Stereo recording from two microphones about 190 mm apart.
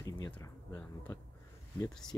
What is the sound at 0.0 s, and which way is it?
Speech, 15° left (ahead or behind).